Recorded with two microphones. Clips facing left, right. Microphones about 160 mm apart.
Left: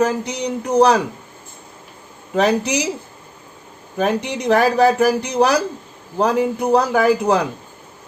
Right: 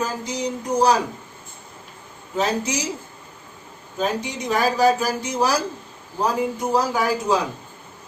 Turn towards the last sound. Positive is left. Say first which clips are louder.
# left 6 dB
turn(degrees=60)  # may be behind; listen again after turning